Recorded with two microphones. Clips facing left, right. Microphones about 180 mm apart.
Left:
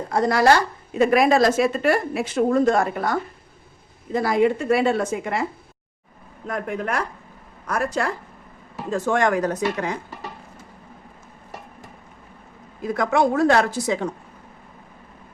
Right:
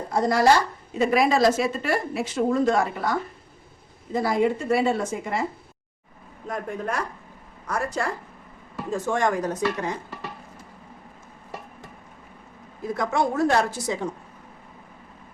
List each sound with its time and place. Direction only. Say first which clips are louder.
0.1 s a woman's voice: left 2 dB; 70° left (ahead or behind)
0.9 s speech: left 4 dB; 55° left (ahead or behind)
4.1 s a woman's voice: left 3 dB; 80° left
6.5 s a woman's voice: left 3 dB; 80° left
8.9 s a woman's voice: left 3 dB; 90° left
12.9 s a woman's voice: left 5 dB; 90° left